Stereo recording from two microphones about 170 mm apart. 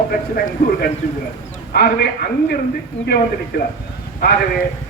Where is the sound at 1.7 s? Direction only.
65° left (ahead or behind).